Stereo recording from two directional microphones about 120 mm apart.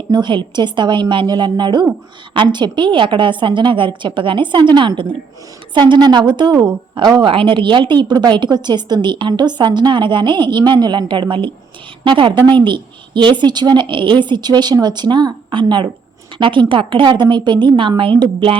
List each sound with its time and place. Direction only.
0.1 s a woman's voice: 40° right (ahead or behind)